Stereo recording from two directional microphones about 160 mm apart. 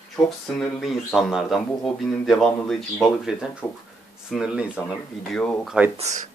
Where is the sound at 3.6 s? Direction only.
10° left (ahead or behind).